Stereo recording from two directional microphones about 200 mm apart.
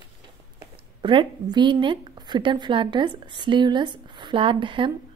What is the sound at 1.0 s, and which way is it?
A woman's voice, 25° right (ahead or behind).